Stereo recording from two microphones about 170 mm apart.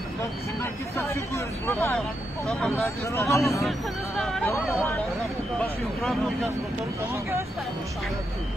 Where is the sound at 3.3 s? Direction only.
20° left (ahead or behind).